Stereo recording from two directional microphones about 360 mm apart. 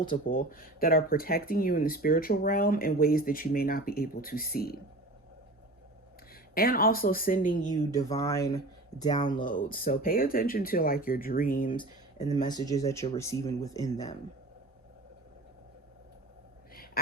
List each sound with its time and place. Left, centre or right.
0.0 s speech: left
6.5 s speech: left
7.7 s speech: centre
16.7 s a sound: left